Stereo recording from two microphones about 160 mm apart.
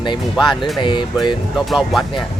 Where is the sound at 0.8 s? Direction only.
30° left (ahead or behind).